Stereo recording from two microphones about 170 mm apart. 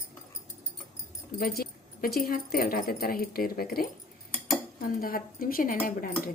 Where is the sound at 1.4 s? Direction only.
60° left (ahead or behind).